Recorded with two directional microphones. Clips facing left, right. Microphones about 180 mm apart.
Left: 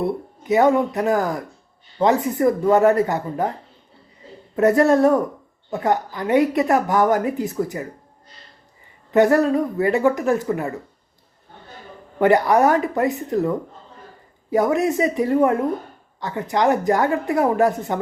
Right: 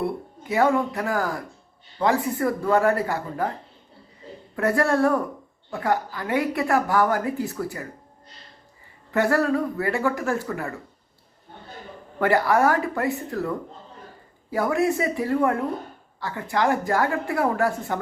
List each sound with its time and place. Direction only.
0.0 s a woman's voice: 20° left (ahead or behind)
4.5 s a woman's voice: 20° left (ahead or behind)
9.1 s a woman's voice: 20° left (ahead or behind)
12.2 s a woman's voice: 20° left (ahead or behind)
14.5 s a woman's voice: 20° left (ahead or behind)